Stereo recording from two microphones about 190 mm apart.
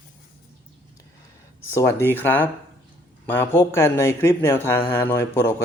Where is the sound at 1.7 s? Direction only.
15° left (ahead or behind).